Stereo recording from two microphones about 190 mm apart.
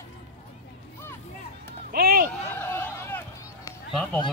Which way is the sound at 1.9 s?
55° right (ahead or behind).